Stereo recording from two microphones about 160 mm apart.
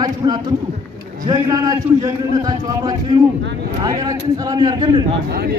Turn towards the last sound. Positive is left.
turn(degrees=-85)